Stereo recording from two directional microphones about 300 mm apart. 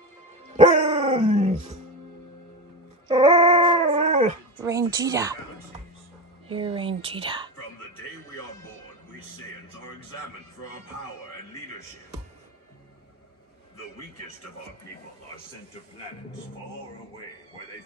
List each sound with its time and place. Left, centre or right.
0.6 s dog: centre
3.1 s dog: centre
4.6 s speech: centre
6.5 s speech: centre